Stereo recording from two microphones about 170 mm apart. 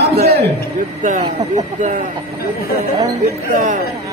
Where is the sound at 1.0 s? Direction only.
45° right (ahead or behind).